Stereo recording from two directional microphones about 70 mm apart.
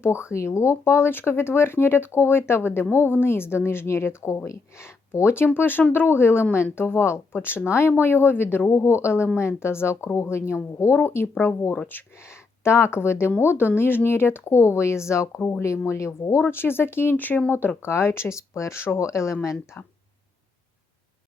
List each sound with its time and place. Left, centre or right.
0.0 s speech: left
16.4 s speech: left